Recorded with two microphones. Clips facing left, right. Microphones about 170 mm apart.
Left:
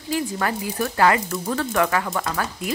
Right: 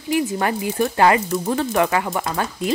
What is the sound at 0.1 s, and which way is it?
Speech, 20° right (ahead or behind).